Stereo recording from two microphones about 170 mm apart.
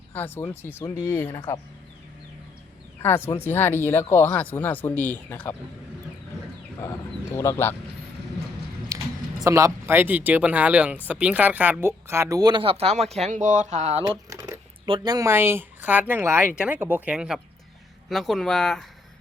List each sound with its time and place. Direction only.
0.1 s speech: 10° left (ahead or behind)
3.4 s speech: 10° left (ahead or behind)
7.3 s speech: 15° left (ahead or behind)
8.9 s a sound: 20° right (ahead or behind)
9.4 s speech: 20° right (ahead or behind); by 14.0 s 40° right (ahead or behind)
14.0 s speech: 20° right (ahead or behind); by 18.9 s 5° left (ahead or behind)